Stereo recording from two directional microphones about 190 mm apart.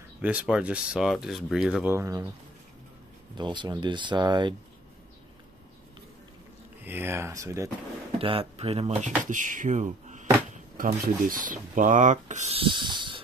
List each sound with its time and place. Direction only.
0.2 s speech: 5° right (ahead or behind)
3.3 s speech: 25° right (ahead or behind)
6.8 s speech: 10° right (ahead or behind)
8.2 s speech: 30° right (ahead or behind)